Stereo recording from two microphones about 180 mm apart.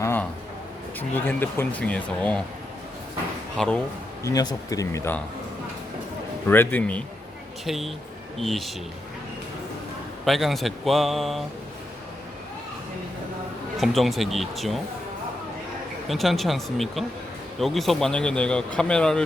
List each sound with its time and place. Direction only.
0.0 s a sound: 10° left (ahead or behind)
0.9 s speech: 10° left (ahead or behind)
3.6 s a man's voice: 5° left (ahead or behind)
4.2 s speech: 20° left (ahead or behind)
6.5 s a man's voice: 10° left (ahead or behind)
10.2 s a man's voice: centre (ahead or behind)
13.7 s a man's voice: centre (ahead or behind)
16.0 s a man's voice: centre (ahead or behind)